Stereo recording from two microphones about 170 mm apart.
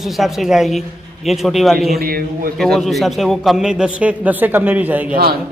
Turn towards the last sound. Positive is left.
turn(degrees=-10)  # may be behind; listen again after turning